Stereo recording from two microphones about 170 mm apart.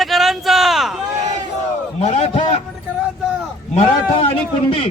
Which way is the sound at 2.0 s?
40° left (ahead or behind).